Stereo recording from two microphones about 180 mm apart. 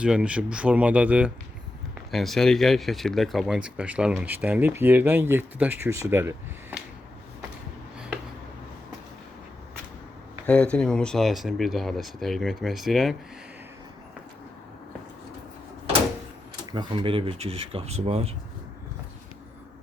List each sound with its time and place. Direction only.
0.0 s speech: 5° right (ahead or behind)
7.9 s a sound: 5° right (ahead or behind)
10.4 s speech: 5° left (ahead or behind)
16.7 s speech: 25° right (ahead or behind)